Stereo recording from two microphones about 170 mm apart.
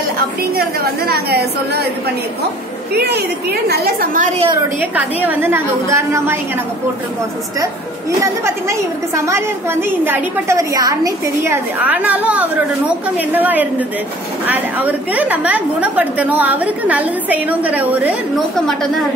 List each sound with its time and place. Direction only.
0.4 s a woman's voice: 60° right (ahead or behind)
3.0 s a woman's voice: 70° right (ahead or behind)
4.7 s a woman's voice: 10° right (ahead or behind)
8.2 s a woman's voice: 15° right (ahead or behind)